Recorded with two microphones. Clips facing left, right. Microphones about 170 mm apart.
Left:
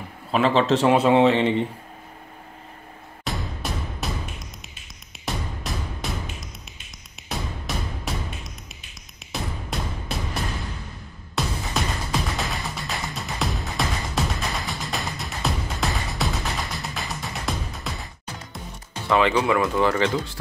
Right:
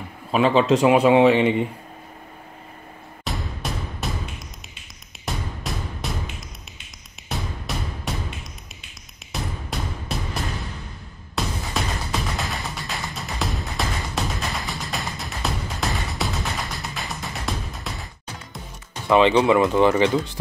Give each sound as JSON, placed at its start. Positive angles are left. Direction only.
{"t": 0.3, "sound": "a man's voice", "side_deg": -5}
{"t": 3.3, "sound": "music", "side_deg": 0}
{"t": 5.2, "sound": "music", "side_deg": 0}
{"t": 7.2, "sound": "music", "side_deg": 0}
{"t": 9.3, "sound": "music", "side_deg": 0}
{"t": 19.0, "sound": "speech", "side_deg": -20}